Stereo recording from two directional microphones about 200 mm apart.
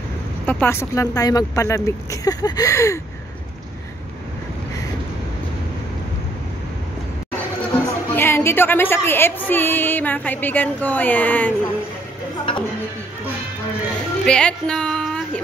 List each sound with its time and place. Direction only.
0.5 s a woman's voice: 10° left (ahead or behind)
7.7 s a woman's voice: 10° left (ahead or behind)
14.2 s speech: 5° left (ahead or behind)